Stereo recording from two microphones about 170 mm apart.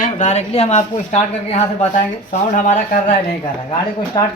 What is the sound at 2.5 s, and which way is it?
Speech, 45° left (ahead or behind).